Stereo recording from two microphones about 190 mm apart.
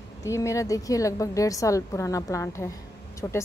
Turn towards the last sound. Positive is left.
turn(degrees=15)  # may be behind; listen again after turning